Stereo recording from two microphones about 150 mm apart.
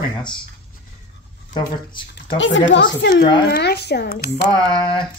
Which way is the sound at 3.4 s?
90° left.